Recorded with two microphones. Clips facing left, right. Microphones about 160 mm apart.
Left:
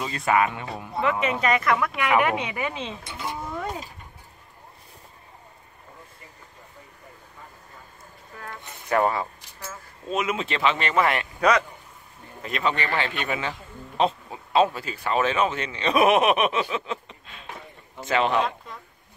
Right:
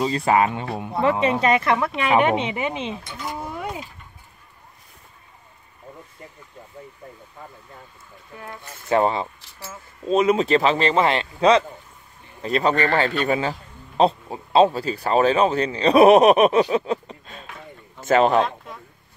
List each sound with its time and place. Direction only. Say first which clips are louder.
0.0 s speech: right 4 dB; 30° right (ahead or behind)
3.5 s vehicle: right 1 dB; 10° right (ahead or behind)
8.4 s speech: right 2 dB; 20° right (ahead or behind)
10.0 s a man's voice: right 9 dB; 35° right (ahead or behind)